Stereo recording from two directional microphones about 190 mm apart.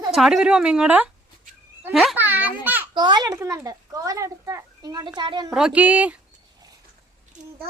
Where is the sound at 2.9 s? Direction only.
20° right (ahead or behind).